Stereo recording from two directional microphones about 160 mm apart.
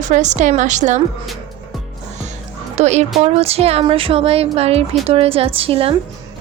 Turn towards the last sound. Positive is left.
turn(degrees=-35)  # may be behind; listen again after turning